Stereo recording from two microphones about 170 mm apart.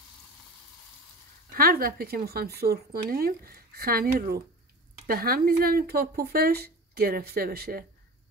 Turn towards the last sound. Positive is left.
turn(degrees=-60)  # may be behind; listen again after turning